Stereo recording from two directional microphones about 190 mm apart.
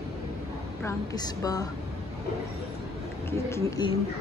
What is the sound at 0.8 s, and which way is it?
Speech, 20° left (ahead or behind).